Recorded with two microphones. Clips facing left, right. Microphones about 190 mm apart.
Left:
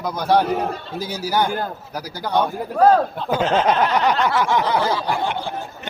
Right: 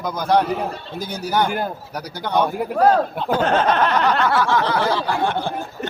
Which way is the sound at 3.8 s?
15° left (ahead or behind).